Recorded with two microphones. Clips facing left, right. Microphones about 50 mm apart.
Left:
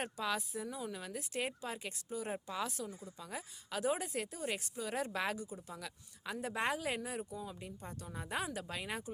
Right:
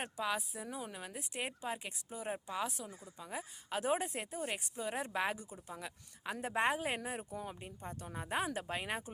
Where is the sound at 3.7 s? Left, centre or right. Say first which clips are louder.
Right 1 dB; right.